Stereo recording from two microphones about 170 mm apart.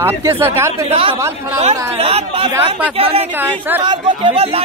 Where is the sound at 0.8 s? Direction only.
35° right (ahead or behind).